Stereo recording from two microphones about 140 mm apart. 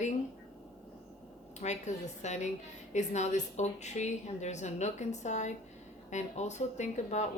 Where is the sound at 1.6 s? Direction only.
55° left (ahead or behind).